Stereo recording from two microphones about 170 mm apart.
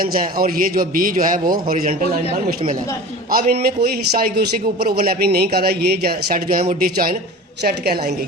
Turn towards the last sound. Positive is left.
turn(degrees=-75)  # may be behind; listen again after turning